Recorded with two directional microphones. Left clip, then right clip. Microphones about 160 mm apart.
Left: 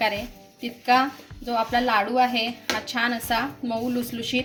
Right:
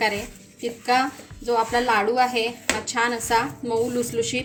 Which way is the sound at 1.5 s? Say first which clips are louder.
Right 2 dB; 20° left (ahead or behind).